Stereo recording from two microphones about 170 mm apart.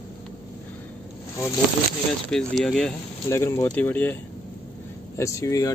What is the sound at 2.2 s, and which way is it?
Speech, centre (ahead or behind).